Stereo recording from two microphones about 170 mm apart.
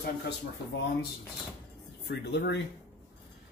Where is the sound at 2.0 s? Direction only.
85° left.